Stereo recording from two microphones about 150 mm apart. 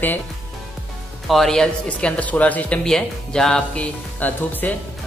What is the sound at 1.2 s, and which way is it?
Speech, centre (ahead or behind).